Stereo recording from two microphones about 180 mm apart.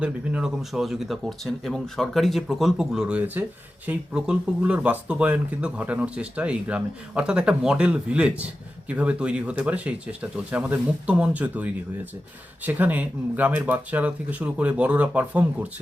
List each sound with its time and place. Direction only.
0.0 s speech: 5° right (ahead or behind)